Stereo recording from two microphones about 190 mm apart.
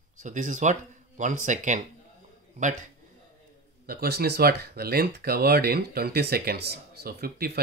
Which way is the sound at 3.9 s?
55° right (ahead or behind).